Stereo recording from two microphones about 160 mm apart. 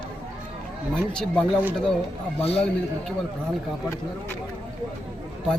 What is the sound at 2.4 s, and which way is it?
Speech, 40° left (ahead or behind).